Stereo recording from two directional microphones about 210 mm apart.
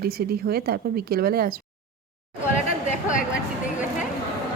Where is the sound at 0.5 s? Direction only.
45° right (ahead or behind).